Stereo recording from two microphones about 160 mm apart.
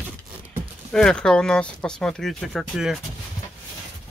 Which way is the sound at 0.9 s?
5° left (ahead or behind).